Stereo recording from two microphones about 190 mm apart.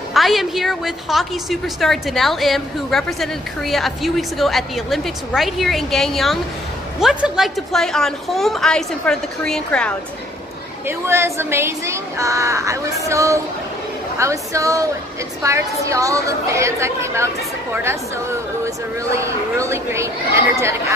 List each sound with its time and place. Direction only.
0.1 s a woman's voice: centre (ahead or behind)
10.9 s speech: 15° right (ahead or behind)
19.1 s speech: 15° right (ahead or behind)